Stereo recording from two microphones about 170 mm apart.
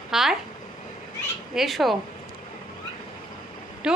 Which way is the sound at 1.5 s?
Centre (ahead or behind).